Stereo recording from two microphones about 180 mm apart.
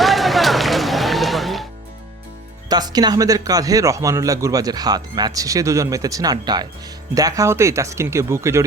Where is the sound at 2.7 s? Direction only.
20° right (ahead or behind).